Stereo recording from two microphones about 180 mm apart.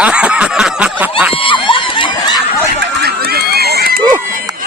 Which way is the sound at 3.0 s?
60° right (ahead or behind).